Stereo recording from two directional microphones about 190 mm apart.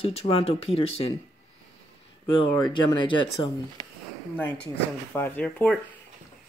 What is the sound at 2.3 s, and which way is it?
Speech, 25° left (ahead or behind).